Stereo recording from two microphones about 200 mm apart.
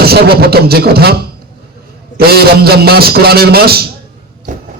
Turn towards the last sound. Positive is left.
turn(degrees=-40)  # may be behind; listen again after turning